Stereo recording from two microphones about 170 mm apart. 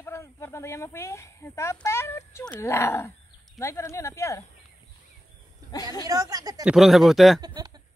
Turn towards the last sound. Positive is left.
turn(degrees=-25)  # may be behind; listen again after turning